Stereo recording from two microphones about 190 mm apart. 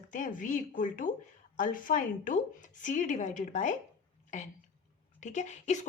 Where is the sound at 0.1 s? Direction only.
45° left (ahead or behind).